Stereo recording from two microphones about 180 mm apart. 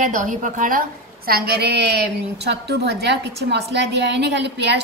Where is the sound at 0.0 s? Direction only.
45° right (ahead or behind).